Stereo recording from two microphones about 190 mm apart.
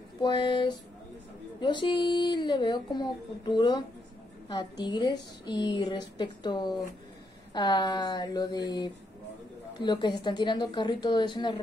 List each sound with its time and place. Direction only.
0.2 s a woman's voice: 25° left (ahead or behind)